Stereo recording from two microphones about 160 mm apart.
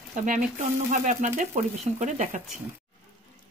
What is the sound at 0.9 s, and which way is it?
Speech, 50° right (ahead or behind).